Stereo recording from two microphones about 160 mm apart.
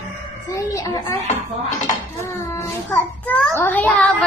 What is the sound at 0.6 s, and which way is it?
Speech, 20° left (ahead or behind).